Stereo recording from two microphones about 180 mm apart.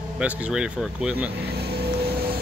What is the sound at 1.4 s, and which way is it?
Vehicle, 65° right (ahead or behind).